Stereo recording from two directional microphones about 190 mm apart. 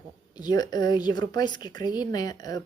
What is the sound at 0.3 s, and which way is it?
A woman's voice, 20° left (ahead or behind).